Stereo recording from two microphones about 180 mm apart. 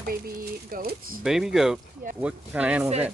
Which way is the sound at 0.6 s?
50° right (ahead or behind).